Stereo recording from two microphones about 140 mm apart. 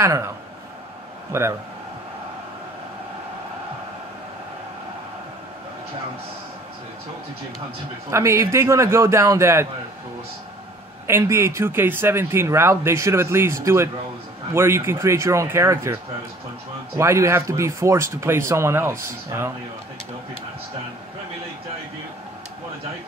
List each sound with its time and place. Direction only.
0.0 s speech: 20° right (ahead or behind)
1.3 s speech: 20° right (ahead or behind)
8.1 s speech: 20° right (ahead or behind)
11.1 s speech: 20° right (ahead or behind)